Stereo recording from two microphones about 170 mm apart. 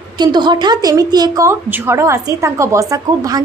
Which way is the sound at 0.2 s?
25° right (ahead or behind).